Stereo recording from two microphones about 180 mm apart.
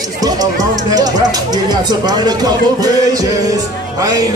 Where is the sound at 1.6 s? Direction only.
25° right (ahead or behind).